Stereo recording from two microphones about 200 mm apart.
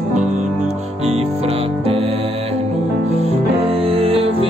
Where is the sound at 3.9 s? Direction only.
30° right (ahead or behind).